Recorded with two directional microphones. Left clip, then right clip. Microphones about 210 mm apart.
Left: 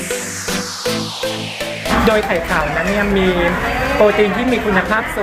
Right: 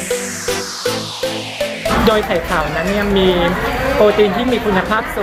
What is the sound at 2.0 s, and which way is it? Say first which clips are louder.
Speech: even; centre (ahead or behind).